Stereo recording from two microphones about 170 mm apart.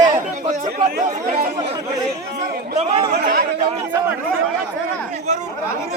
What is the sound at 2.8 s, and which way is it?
Speech, 40° right (ahead or behind).